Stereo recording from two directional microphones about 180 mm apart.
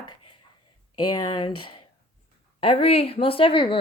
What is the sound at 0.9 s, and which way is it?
Speech, 20° left (ahead or behind).